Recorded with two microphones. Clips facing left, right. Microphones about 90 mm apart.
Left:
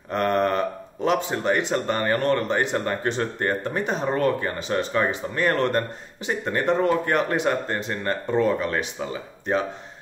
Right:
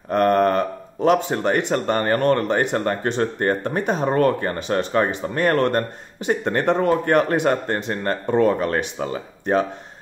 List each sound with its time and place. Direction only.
0.1 s a man's voice: 45° right (ahead or behind)
6.9 s speech: 45° right (ahead or behind)